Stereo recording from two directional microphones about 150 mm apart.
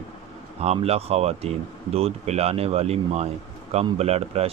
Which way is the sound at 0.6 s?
45° right (ahead or behind).